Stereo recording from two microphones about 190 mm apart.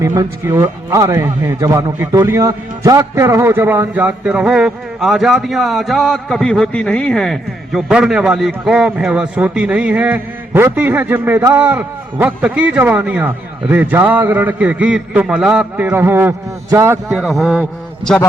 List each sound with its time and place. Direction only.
0.0 s a man's voice: 20° right (ahead or behind)
17.2 s a man's voice: centre (ahead or behind)